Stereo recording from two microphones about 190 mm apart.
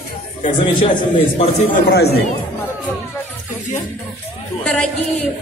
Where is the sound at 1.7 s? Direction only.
55° left (ahead or behind).